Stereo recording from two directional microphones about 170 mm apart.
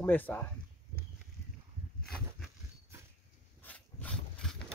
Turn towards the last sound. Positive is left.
turn(degrees=5)  # may be behind; listen again after turning